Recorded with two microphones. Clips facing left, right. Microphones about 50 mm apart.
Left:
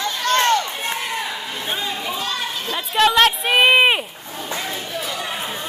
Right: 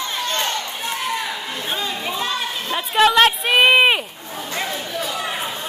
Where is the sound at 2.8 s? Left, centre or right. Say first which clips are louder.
Right 1 dB; centre.